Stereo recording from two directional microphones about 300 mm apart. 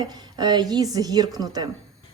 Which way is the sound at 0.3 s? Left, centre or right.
Centre.